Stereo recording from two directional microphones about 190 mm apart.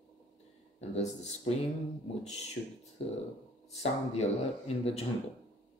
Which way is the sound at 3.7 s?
35° left (ahead or behind).